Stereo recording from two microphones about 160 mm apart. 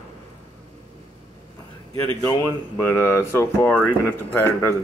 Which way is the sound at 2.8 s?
15° left (ahead or behind).